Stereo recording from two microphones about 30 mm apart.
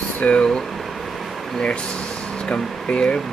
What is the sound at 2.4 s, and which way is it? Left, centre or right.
Speech, left.